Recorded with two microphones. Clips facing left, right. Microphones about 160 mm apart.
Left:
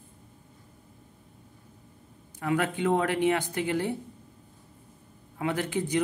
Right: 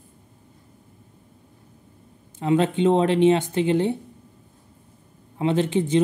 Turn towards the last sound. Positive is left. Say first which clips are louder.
# right 8 dB
turn(degrees=-25)  # may be behind; listen again after turning